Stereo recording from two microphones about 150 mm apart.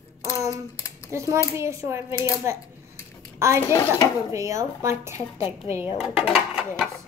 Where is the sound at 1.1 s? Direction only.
20° right (ahead or behind).